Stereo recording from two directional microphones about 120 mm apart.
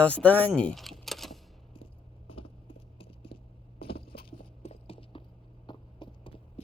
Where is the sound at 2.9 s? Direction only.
50° left (ahead or behind).